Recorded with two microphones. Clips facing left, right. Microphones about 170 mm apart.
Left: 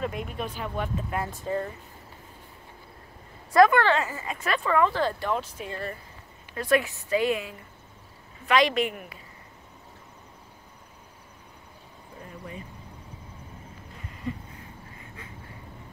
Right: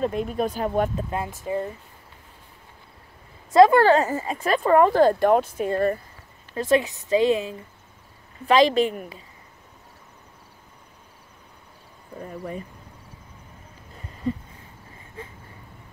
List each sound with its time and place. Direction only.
0.0 s speech: 35° right (ahead or behind)
1.1 s speech: 20° right (ahead or behind)
3.5 s speech: 25° right (ahead or behind)
3.8 s speech: 40° right (ahead or behind)
6.5 s speech: 25° right (ahead or behind)